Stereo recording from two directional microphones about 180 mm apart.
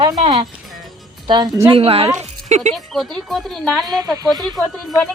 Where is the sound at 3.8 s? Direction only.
20° right (ahead or behind).